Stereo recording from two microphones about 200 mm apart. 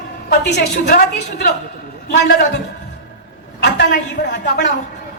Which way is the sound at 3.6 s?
60° left (ahead or behind).